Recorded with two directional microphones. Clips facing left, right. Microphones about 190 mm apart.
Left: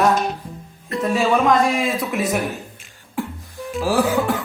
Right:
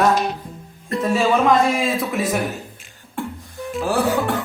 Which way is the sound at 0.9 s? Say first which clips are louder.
Even; centre (ahead or behind).